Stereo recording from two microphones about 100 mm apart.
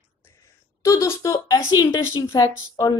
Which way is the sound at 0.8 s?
30° left (ahead or behind).